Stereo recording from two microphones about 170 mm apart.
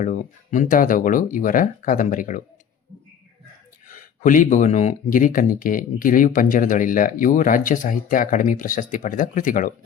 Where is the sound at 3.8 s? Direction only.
50° left (ahead or behind).